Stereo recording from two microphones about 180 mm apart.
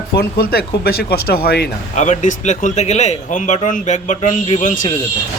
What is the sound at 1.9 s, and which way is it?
A man's voice, 40° left (ahead or behind).